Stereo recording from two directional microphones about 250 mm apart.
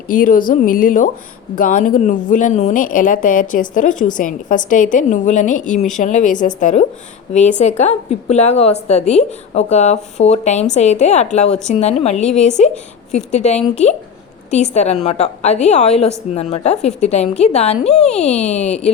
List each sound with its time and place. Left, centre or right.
0.1 s a woman's voice: left
12.2 s a woman's voice: centre
12.5 s a woman's voice: left